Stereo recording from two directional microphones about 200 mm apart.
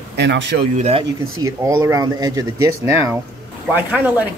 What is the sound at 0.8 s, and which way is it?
Speech, 30° right (ahead or behind).